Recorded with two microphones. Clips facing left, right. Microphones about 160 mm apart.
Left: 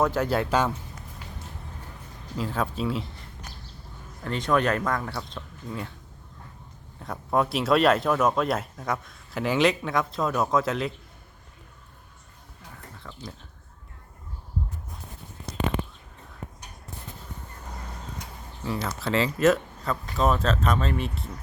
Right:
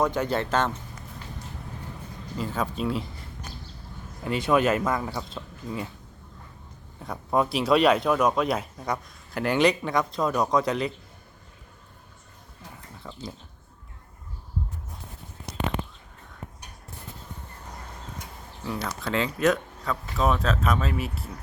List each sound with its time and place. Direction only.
0.0 s speech: 5° left (ahead or behind)
2.4 s speech: centre (ahead or behind)
4.2 s speech: 5° right (ahead or behind)
7.0 s speech: centre (ahead or behind)
13.0 s speech: 20° right (ahead or behind)
18.6 s speech: centre (ahead or behind)